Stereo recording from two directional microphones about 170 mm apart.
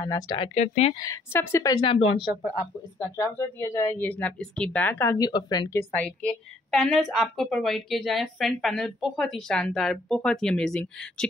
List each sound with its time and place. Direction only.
0.0 s a woman's voice: 20° left (ahead or behind)
0.4 s speech: 35° left (ahead or behind)
0.9 s a woman's voice: 20° left (ahead or behind)
2.0 s speech: 35° left (ahead or behind); by 6.1 s 10° left (ahead or behind)
6.7 s a woman's voice: centre (ahead or behind)